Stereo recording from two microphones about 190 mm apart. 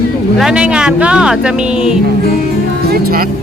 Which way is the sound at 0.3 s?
5° right (ahead or behind).